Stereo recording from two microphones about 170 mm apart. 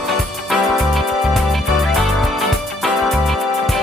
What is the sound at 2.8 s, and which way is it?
Music, centre (ahead or behind).